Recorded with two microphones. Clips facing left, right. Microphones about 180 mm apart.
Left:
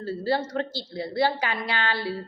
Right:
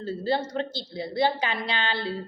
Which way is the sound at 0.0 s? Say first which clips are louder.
Left 1 dB; 20° right (ahead or behind).